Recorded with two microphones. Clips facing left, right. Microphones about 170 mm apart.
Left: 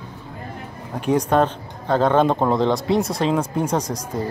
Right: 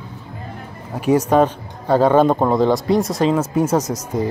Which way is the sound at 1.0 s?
5° right (ahead or behind).